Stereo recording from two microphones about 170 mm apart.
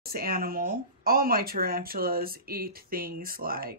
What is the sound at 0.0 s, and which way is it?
Speech, 60° right (ahead or behind).